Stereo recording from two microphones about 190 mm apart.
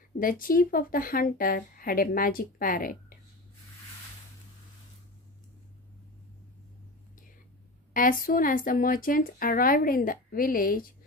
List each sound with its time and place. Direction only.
0.2 s speech: 45° left (ahead or behind)
7.9 s speech: 45° left (ahead or behind)